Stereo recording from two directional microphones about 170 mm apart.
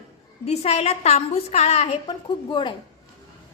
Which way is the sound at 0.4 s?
40° left (ahead or behind).